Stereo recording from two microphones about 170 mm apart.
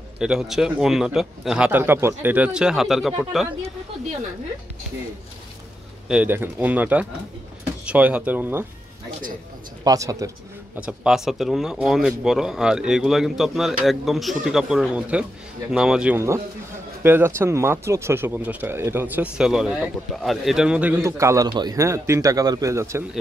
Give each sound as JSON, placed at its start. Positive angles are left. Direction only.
{"t": 0.2, "sound": "a man's voice", "side_deg": -5}
{"t": 6.0, "sound": "speech", "side_deg": -10}
{"t": 9.8, "sound": "speech", "side_deg": -20}
{"t": 10.8, "sound": "a man's voice", "side_deg": -5}